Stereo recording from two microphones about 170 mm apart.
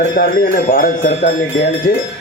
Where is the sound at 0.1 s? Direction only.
60° left (ahead or behind).